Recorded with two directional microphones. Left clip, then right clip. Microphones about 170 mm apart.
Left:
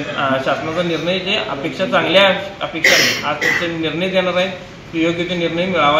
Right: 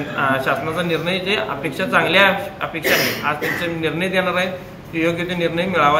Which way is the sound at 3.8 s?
20° right (ahead or behind).